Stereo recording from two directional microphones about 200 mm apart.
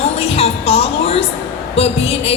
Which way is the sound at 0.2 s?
30° left (ahead or behind).